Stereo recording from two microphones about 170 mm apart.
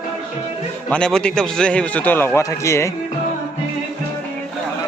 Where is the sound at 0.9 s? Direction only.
5° left (ahead or behind).